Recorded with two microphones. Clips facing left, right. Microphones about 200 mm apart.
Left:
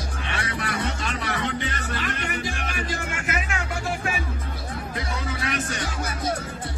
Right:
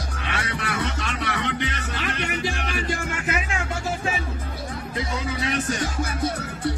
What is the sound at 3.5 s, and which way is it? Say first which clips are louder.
Music: right 1 dB; 25° right (ahead or behind).